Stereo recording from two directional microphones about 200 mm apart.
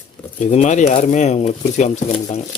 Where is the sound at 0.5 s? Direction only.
35° left (ahead or behind).